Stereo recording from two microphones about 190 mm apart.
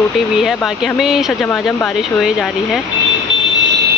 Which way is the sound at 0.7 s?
Centre (ahead or behind).